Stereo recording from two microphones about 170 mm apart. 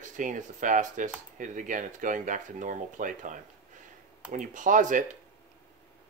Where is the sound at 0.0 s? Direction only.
50° right (ahead or behind).